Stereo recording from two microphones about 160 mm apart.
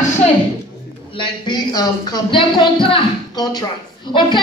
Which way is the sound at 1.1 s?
30° left (ahead or behind).